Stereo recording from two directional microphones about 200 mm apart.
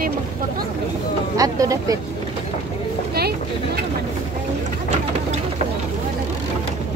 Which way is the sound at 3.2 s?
55° right (ahead or behind).